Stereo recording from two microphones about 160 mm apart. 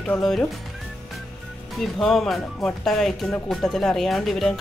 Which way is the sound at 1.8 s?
Centre (ahead or behind).